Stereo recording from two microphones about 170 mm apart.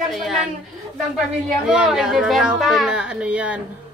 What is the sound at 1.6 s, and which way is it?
Speech, 5° right (ahead or behind).